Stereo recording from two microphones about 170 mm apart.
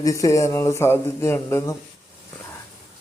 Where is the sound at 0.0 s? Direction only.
20° left (ahead or behind).